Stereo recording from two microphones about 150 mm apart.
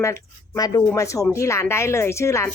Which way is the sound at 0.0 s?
20° left (ahead or behind).